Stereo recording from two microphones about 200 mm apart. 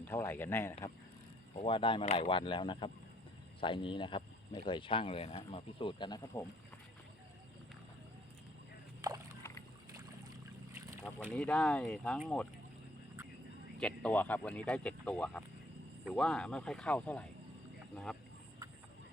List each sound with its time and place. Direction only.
0.0 s speech: 10° left (ahead or behind)
1.6 s speech: 25° left (ahead or behind)
9.0 s rowboat: 15° right (ahead or behind)
10.7 s boat: 15° right (ahead or behind)
11.3 s speech: 5° left (ahead or behind)
13.7 s speech: 5° left (ahead or behind)